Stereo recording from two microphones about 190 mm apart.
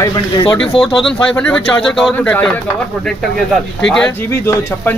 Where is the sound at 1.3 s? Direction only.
5° left (ahead or behind).